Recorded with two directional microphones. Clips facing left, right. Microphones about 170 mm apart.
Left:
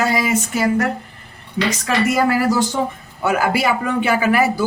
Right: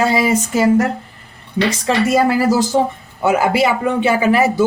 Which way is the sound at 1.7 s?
30° right (ahead or behind).